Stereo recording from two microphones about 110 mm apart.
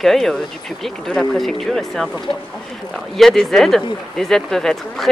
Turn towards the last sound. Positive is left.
turn(degrees=5)  # may be behind; listen again after turning